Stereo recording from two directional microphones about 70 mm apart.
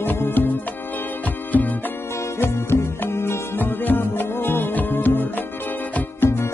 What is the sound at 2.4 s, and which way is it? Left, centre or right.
Music, left.